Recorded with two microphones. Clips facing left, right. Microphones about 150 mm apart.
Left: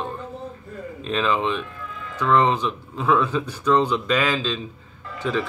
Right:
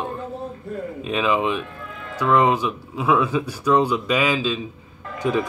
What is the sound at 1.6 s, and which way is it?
Music, 50° right (ahead or behind).